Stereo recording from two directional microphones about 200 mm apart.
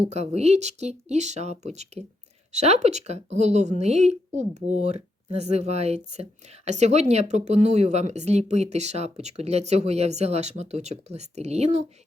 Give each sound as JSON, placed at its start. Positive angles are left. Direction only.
{"t": 0.1, "sound": "speech", "side_deg": -35}